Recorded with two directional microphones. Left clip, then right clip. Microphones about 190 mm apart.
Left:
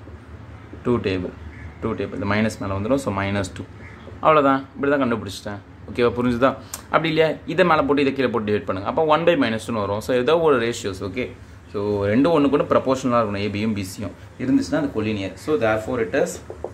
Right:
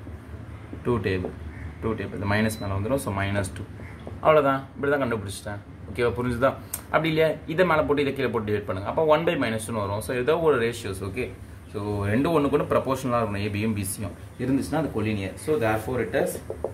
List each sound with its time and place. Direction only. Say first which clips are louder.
0.8 s a man's voice: left 4 dB; 30° left (ahead or behind)